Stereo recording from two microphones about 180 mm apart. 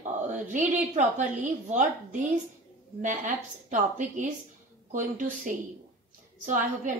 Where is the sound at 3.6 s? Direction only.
45° right (ahead or behind).